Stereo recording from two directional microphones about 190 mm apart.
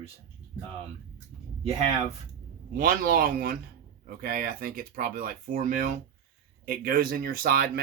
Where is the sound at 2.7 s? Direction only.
50° right (ahead or behind).